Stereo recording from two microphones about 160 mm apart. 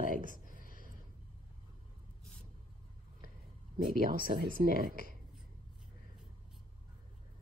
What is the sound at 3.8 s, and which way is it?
Speech, 60° right (ahead or behind).